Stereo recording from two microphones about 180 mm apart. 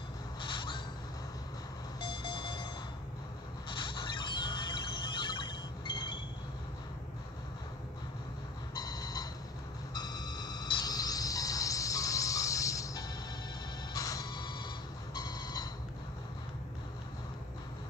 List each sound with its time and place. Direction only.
0.4 s a sound: 25° left (ahead or behind)
2.0 s alarm clock: 25° left (ahead or behind)
3.6 s a sound: 25° left (ahead or behind)
8.7 s alarm clock: 20° left (ahead or behind)
9.9 s cricket: 20° left (ahead or behind)
13.9 s music: 20° left (ahead or behind)
15.1 s alarm clock: 20° left (ahead or behind)